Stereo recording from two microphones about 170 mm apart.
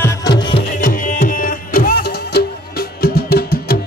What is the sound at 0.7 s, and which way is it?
Music, 55° left (ahead or behind).